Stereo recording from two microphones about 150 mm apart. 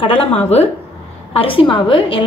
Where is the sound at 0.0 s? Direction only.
40° left (ahead or behind).